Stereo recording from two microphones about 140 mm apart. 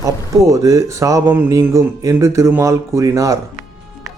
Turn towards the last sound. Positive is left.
turn(degrees=-25)  # may be behind; listen again after turning